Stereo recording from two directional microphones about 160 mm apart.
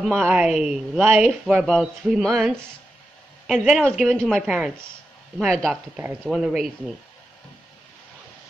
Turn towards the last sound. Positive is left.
turn(degrees=-5)  # may be behind; listen again after turning